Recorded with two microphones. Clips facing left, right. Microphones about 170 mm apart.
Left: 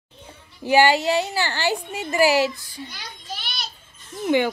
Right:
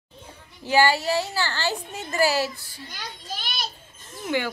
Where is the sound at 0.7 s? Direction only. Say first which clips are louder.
Left 3 dB; 15° left (ahead or behind).